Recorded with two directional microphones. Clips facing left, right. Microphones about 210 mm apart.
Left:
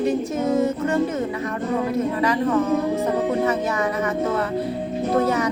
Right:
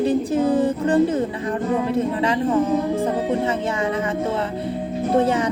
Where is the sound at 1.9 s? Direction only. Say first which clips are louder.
Right 1 dB; 30° right (ahead or behind).